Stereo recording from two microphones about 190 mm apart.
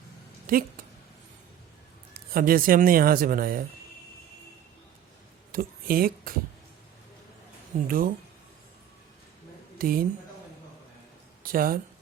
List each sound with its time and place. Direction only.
0.5 s speech: 50° right (ahead or behind)
2.1 s speech: 50° right (ahead or behind)
5.5 s speech: 50° right (ahead or behind)
7.9 s speech: 50° right (ahead or behind)
9.7 s speech: 50° right (ahead or behind)
11.4 s speech: 50° right (ahead or behind)